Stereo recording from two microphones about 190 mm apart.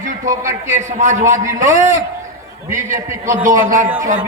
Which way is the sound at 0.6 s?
40° right (ahead or behind).